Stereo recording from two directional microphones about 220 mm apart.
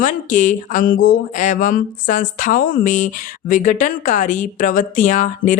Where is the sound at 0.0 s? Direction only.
35° left (ahead or behind).